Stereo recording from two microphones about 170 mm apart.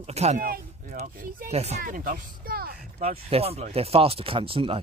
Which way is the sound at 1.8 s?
55° right (ahead or behind).